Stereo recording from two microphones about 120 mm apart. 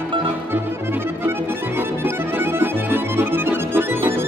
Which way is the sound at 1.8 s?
20° right (ahead or behind).